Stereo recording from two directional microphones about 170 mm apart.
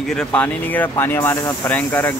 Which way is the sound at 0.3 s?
10° left (ahead or behind).